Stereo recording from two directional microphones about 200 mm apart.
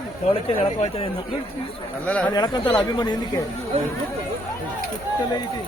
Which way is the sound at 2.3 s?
20° left (ahead or behind).